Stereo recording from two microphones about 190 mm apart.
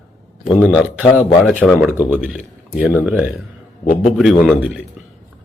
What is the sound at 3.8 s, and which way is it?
Speech, 40° left (ahead or behind).